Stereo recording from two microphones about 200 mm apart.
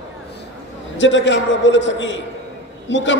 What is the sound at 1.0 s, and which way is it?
A man's voice, 65° left (ahead or behind).